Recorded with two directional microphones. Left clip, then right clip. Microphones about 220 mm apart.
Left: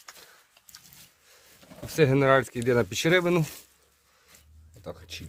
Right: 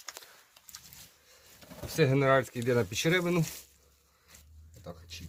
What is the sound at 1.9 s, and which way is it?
Speech, 55° left (ahead or behind).